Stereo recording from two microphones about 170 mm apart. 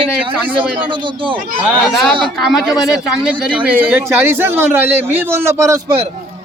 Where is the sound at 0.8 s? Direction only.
30° right (ahead or behind).